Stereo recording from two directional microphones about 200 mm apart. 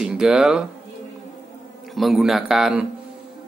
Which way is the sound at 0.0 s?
5° right (ahead or behind).